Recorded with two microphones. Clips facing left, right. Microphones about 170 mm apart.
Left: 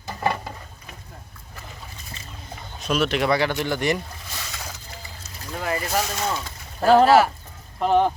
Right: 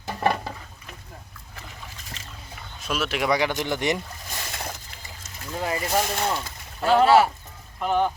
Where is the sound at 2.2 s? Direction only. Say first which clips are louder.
Left 1 dB; 90° right.